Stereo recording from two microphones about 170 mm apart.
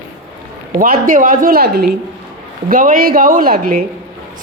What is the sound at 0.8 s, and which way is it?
A woman's voice, 55° right (ahead or behind).